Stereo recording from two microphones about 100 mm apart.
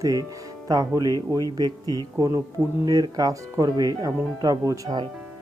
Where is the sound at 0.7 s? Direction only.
35° right (ahead or behind).